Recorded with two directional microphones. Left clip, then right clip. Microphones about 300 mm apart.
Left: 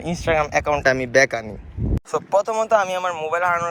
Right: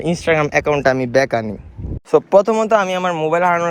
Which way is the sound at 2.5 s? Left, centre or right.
Right.